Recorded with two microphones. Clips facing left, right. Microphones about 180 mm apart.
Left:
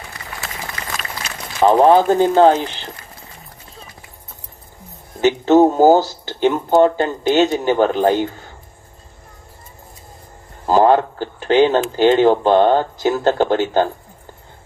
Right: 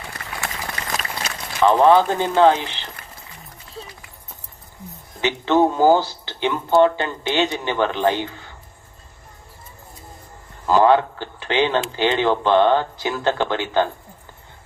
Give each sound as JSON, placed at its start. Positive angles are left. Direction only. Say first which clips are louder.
{"t": 1.5, "sound": "speech", "louder": "left 3 dB", "side_deg": 40}
{"t": 5.2, "sound": "speech", "louder": "left 6 dB", "side_deg": 45}
{"t": 10.7, "sound": "speech", "louder": "left 2 dB", "side_deg": 45}